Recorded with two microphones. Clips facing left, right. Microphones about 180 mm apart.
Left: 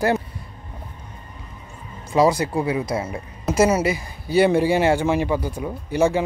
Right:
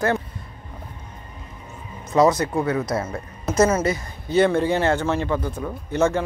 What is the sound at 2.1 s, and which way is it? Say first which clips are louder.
Speech: even; 30° left (ahead or behind).